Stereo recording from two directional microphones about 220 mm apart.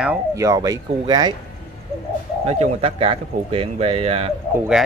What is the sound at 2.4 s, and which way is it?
Speech, 30° right (ahead or behind).